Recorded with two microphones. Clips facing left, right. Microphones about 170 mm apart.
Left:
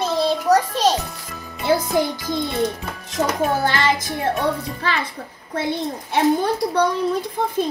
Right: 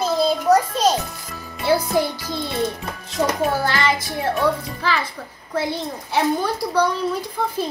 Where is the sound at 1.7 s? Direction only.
5° right (ahead or behind).